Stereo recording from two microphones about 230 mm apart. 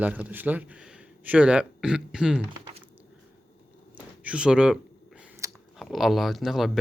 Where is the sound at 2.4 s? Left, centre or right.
Right.